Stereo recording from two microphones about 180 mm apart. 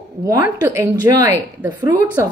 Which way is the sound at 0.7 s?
15° right (ahead or behind).